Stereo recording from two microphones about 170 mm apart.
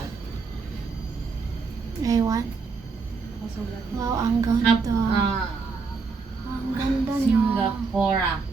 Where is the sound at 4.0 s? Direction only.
20° right (ahead or behind).